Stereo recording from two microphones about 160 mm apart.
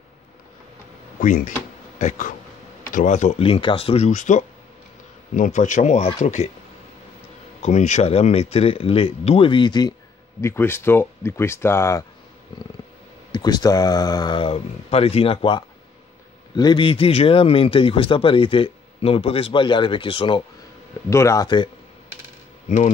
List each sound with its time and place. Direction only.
1.2 s speech: 55° left (ahead or behind)
7.6 s speech: 50° left (ahead or behind); by 9.9 s 25° left (ahead or behind)
10.4 s speech: 15° left (ahead or behind)
13.3 s speech: 25° left (ahead or behind)
21.1 s speech: 20° left (ahead or behind)